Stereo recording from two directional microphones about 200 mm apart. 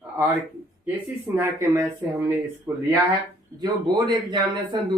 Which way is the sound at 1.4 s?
15° right (ahead or behind).